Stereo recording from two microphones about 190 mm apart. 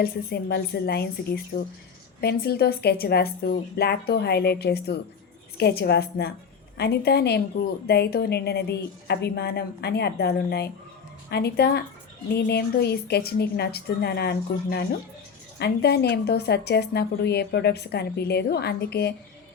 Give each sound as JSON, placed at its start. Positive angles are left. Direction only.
{"t": 0.0, "sound": "a woman's voice", "side_deg": 55}